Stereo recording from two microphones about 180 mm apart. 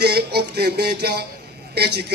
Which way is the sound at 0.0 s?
60° right (ahead or behind).